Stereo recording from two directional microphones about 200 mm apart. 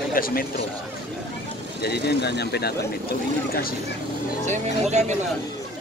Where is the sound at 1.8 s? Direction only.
55° left (ahead or behind).